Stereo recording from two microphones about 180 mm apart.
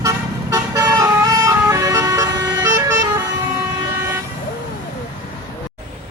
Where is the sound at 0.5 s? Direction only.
20° right (ahead or behind).